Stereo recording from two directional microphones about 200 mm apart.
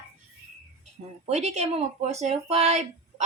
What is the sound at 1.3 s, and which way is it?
Speech, 35° right (ahead or behind).